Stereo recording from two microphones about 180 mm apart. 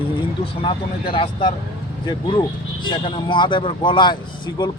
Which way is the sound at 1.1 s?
30° left (ahead or behind).